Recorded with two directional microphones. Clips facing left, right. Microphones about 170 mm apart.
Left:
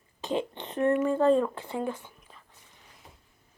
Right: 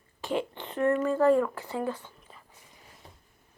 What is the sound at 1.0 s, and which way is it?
Speech, 20° left (ahead or behind).